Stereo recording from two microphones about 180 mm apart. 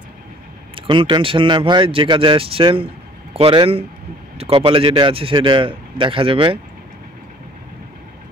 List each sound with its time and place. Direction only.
0.7 s a man's voice: 25° right (ahead or behind)